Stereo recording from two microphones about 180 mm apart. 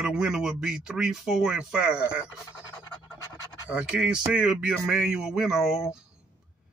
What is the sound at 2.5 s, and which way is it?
Speech, 20° left (ahead or behind).